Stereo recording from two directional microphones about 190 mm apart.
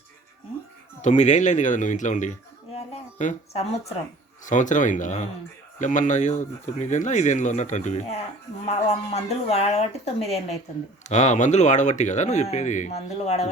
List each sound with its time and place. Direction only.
1.0 s speech: 40° left (ahead or behind)
2.7 s a sound: 40° left (ahead or behind)
4.4 s speech: 40° left (ahead or behind)